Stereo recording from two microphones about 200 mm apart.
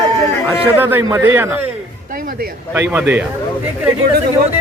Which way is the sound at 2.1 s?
45° right (ahead or behind).